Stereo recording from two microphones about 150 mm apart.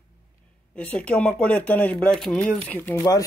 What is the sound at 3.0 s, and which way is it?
Speech, 25° left (ahead or behind).